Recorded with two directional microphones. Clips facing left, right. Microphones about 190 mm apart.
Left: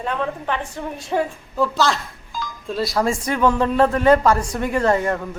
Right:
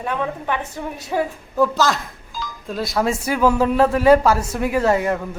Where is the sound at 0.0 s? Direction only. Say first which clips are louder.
Even; 10° right (ahead or behind).